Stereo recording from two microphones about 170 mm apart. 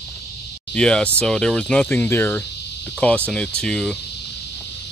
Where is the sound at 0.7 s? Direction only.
5° left (ahead or behind).